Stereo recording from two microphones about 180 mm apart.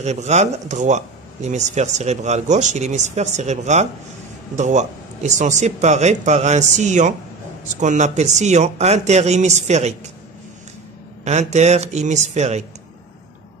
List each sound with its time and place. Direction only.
0.0 s speech: 40° right (ahead or behind)
11.2 s speech: 40° right (ahead or behind)